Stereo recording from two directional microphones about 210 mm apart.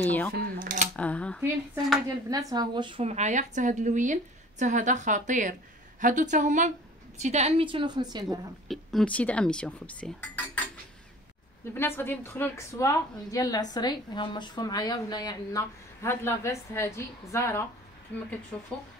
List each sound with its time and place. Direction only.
0.0 s speech: 10° left (ahead or behind)
0.6 s a sound: 40° right (ahead or behind)
0.9 s a sound: 5° left (ahead or behind)
2.2 s a woman's voice: 15° right (ahead or behind)
8.6 s speech: 5° left (ahead or behind)
11.7 s a woman's voice: 10° left (ahead or behind)